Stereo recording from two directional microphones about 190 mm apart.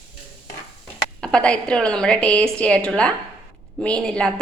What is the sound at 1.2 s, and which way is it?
A woman's voice, 5° left (ahead or behind).